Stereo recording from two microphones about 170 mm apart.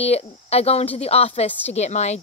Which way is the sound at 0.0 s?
35° left (ahead or behind).